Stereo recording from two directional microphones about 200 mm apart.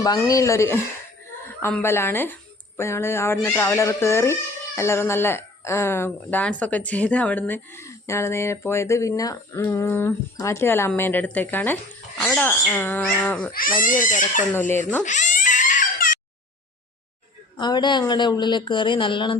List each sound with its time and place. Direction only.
0.0 s speech: 15° left (ahead or behind)
14.0 s speech: 40° left (ahead or behind)
14.5 s speech: 10° left (ahead or behind)
15.0 s a sound: 40° left (ahead or behind)
17.6 s speech: 20° left (ahead or behind)